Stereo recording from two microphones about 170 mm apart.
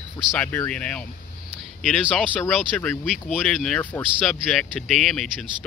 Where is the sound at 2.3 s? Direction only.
10° left (ahead or behind).